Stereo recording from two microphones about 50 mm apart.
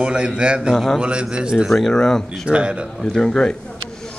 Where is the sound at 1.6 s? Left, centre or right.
Centre.